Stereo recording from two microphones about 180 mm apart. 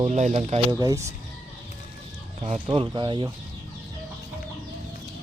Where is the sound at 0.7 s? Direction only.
20° right (ahead or behind).